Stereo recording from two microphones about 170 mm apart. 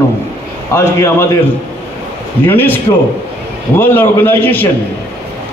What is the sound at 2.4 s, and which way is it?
Speech, 10° left (ahead or behind).